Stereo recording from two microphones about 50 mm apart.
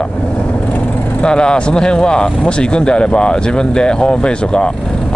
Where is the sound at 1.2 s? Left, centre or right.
Centre.